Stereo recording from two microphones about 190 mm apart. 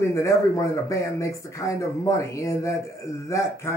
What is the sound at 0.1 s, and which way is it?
Speech, 15° left (ahead or behind).